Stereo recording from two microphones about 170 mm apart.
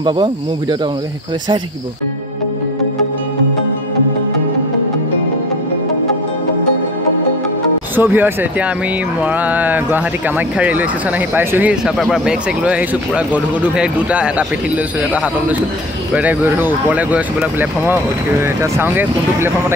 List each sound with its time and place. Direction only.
0.0 s speech: 25° right (ahead or behind)
7.9 s speech: 10° right (ahead or behind)